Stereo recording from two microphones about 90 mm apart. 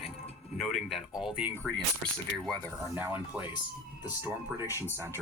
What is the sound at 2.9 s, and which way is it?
Speech, 20° right (ahead or behind).